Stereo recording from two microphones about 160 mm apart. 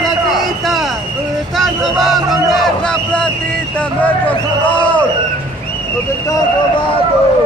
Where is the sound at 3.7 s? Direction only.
10° left (ahead or behind).